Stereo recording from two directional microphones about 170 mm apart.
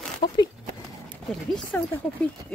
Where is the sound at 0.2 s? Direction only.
25° left (ahead or behind).